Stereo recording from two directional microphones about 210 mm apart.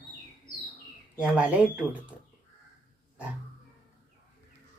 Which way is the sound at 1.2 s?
5° right (ahead or behind).